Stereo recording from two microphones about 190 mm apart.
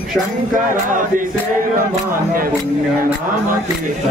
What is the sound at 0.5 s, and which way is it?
Music, 45° right (ahead or behind).